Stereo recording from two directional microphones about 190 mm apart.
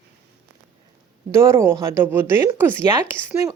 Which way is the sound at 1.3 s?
15° right (ahead or behind).